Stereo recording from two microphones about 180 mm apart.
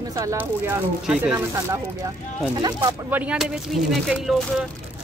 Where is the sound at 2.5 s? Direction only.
25° right (ahead or behind).